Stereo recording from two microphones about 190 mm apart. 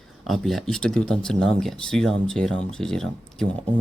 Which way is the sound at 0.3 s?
Centre (ahead or behind).